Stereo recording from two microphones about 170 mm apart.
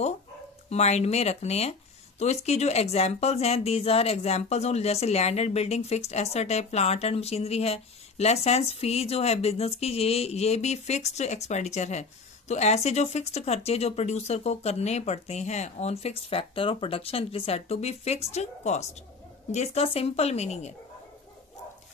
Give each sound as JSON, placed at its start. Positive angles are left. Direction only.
{"t": 0.7, "sound": "speech", "side_deg": 40}